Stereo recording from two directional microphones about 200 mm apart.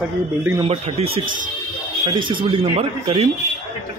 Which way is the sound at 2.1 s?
25° right (ahead or behind).